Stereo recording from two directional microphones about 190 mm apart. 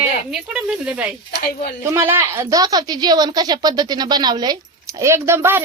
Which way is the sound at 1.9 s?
15° right (ahead or behind).